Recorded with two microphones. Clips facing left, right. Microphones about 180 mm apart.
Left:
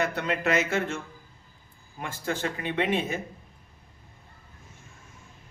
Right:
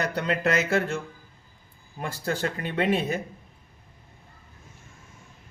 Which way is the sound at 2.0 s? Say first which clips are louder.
Right 2 dB; 35° right (ahead or behind).